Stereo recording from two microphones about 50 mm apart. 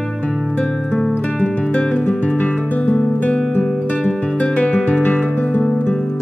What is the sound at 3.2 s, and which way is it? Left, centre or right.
Guitar, left.